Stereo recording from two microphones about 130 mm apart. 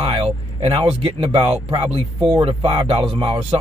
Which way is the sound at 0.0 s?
45° right (ahead or behind).